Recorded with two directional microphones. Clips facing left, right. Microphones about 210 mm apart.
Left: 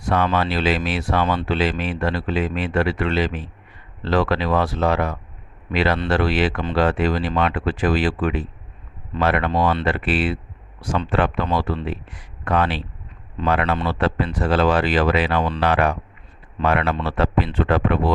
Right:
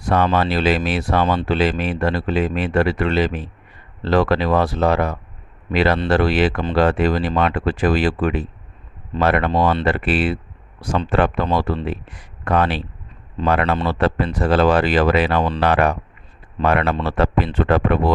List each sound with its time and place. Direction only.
0.0 s speech: 40° right (ahead or behind)